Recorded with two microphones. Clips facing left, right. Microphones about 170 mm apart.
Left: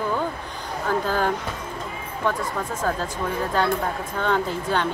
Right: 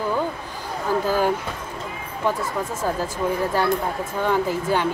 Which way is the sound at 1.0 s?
10° right (ahead or behind).